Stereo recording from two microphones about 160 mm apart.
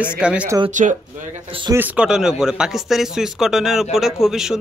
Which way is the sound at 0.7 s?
50° right (ahead or behind).